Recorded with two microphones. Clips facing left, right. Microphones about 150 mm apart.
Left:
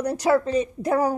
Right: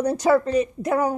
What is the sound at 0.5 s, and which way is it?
Speech, 35° left (ahead or behind).